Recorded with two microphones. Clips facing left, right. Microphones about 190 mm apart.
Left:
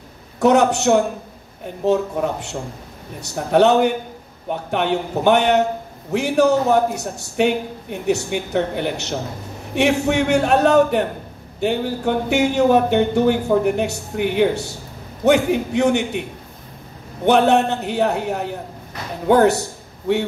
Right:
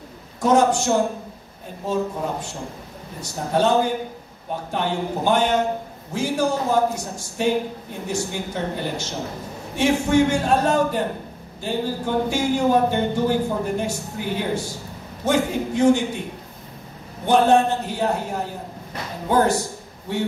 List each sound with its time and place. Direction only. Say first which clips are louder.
0.4 s a man's voice: left 3 dB; 70° left (ahead or behind)
3.3 s a man's voice: left 5 dB; 70° left (ahead or behind)
17.3 s a man's voice: left 2 dB; 70° left (ahead or behind)